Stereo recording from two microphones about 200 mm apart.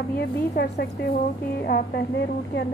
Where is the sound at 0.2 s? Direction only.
55° left (ahead or behind).